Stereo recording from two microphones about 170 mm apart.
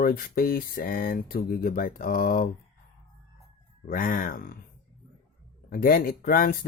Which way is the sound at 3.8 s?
55° left (ahead or behind).